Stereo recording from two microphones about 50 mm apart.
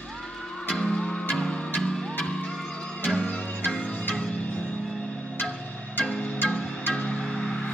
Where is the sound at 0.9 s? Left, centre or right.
Centre.